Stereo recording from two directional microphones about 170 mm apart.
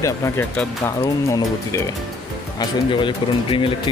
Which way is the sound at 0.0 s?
20° left (ahead or behind).